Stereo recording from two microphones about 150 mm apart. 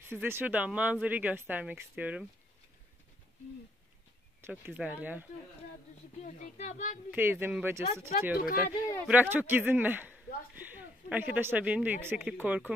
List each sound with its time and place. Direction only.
0.0 s speech: 15° right (ahead or behind)
4.4 s speech: 15° right (ahead or behind)
6.2 s speech: 55° left (ahead or behind)
7.1 s speech: 15° right (ahead or behind)
8.4 s speech: 70° left (ahead or behind)
9.0 s speech: 10° right (ahead or behind)